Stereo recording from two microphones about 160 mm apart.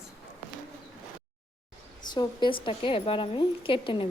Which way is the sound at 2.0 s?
25° left (ahead or behind).